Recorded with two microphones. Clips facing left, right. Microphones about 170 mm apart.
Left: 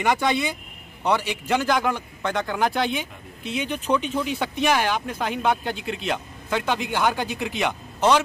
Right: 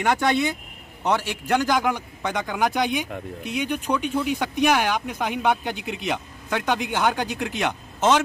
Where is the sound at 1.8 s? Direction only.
15° right (ahead or behind).